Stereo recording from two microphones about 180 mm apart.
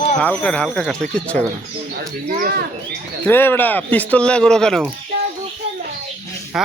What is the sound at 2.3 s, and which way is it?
Speech, 50° right (ahead or behind).